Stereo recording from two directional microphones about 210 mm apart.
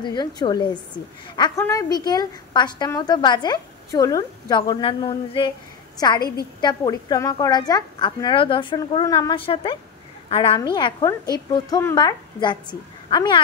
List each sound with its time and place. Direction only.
0.0 s a woman's voice: 20° left (ahead or behind)